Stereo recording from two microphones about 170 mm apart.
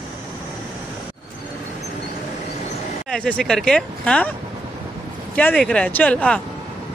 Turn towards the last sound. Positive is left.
turn(degrees=5)  # may be behind; listen again after turning